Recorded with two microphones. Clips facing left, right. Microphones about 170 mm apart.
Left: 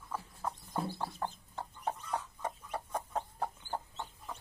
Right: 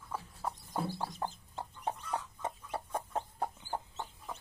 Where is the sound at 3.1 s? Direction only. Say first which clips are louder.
Even; 10° right (ahead or behind).